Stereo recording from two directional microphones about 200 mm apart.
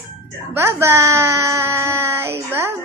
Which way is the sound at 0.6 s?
10° right (ahead or behind).